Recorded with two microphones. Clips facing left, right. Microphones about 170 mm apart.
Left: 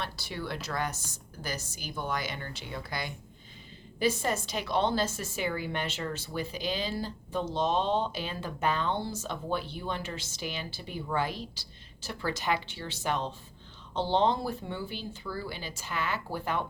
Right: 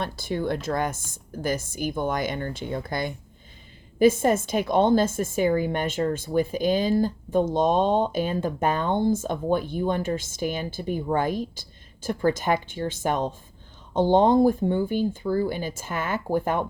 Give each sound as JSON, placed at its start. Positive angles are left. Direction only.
{"t": 0.0, "sound": "speech", "side_deg": -50}